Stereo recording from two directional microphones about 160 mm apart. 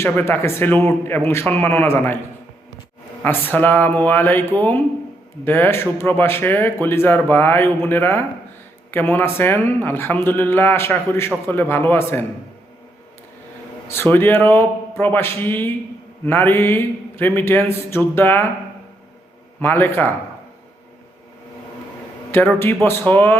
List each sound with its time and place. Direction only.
0.0 s speech: 15° left (ahead or behind)
3.2 s speech: 10° left (ahead or behind)
13.8 s speech: 15° left (ahead or behind)
19.5 s speech: 10° left (ahead or behind)
22.3 s speech: 15° left (ahead or behind)